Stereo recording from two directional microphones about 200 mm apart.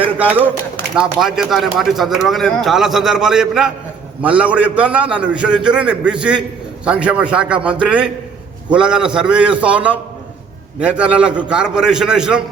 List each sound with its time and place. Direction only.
0.0 s a man's voice: 10° right (ahead or behind)